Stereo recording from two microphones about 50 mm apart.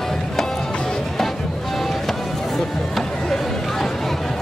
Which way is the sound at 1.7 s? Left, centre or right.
Centre.